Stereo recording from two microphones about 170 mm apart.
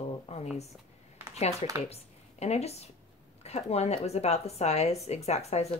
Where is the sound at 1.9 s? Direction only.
40° left (ahead or behind).